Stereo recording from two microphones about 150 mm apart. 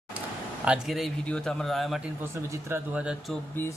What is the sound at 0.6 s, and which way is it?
A man's voice, 5° right (ahead or behind).